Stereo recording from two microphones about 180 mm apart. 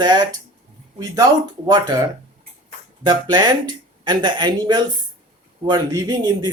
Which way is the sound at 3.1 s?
25° right (ahead or behind).